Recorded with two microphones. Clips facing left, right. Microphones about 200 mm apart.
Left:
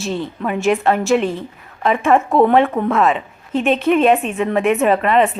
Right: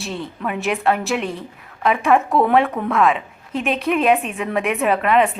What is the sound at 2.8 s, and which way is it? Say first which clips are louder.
Speech: left 5 dB; 15° left (ahead or behind).